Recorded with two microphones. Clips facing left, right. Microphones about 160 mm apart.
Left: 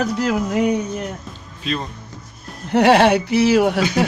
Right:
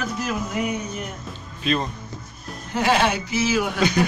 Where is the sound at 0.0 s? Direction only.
75° left (ahead or behind).